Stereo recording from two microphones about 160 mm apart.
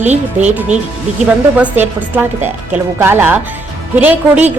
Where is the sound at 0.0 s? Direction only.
45° right (ahead or behind).